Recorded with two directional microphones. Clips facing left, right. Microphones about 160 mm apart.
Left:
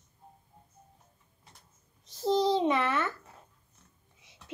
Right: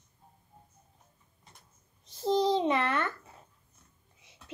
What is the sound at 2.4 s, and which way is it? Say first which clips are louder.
Speech: even; 5° left (ahead or behind).